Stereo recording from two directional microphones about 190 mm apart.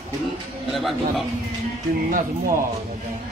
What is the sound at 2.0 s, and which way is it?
Speech, 45° right (ahead or behind).